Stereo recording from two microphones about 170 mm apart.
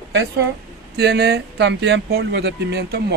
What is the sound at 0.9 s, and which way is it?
Speech, 75° right (ahead or behind).